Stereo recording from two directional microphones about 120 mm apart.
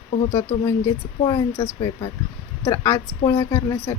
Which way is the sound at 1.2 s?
40° left (ahead or behind).